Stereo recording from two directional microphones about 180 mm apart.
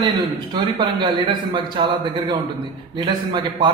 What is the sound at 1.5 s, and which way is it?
Speech, 25° right (ahead or behind).